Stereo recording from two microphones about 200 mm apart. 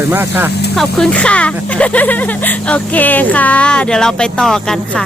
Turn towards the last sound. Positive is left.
turn(degrees=0)  # may be behind; listen again after turning